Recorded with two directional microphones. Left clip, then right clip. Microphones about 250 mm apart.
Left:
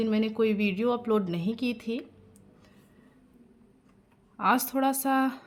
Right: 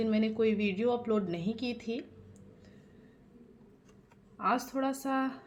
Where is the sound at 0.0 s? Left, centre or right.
Left.